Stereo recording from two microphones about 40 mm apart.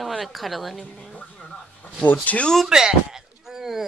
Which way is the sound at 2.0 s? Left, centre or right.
Left.